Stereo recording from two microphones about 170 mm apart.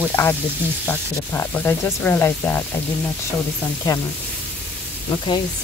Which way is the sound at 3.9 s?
20° left (ahead or behind).